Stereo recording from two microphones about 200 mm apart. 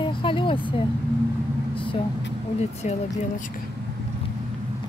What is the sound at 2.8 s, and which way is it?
Speech, 40° left (ahead or behind).